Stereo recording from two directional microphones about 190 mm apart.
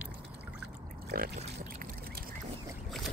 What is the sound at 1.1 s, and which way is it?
Pour, 50° right (ahead or behind).